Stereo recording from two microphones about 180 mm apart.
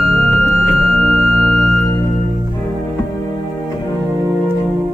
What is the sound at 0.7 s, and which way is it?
Music, centre (ahead or behind).